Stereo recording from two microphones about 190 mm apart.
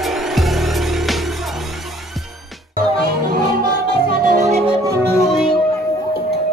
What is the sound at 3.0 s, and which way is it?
Music, 50° right (ahead or behind).